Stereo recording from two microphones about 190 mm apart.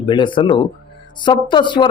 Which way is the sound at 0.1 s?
25° left (ahead or behind).